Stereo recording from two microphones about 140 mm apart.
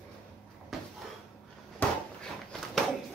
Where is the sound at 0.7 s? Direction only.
Centre (ahead or behind).